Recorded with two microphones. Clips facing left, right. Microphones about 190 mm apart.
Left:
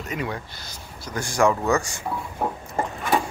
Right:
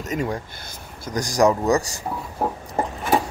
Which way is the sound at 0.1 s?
45° right (ahead or behind).